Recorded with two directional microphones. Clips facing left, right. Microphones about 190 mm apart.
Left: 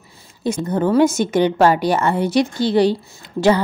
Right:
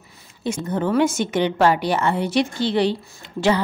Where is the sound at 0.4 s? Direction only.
40° left (ahead or behind).